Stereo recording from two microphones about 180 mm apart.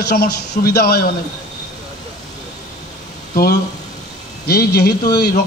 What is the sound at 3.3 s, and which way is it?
A man's voice, 60° left (ahead or behind).